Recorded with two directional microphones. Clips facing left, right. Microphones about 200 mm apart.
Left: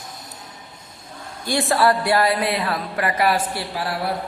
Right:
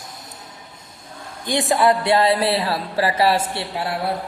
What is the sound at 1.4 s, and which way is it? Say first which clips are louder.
A woman's voice: right 1 dB; 20° right (ahead or behind).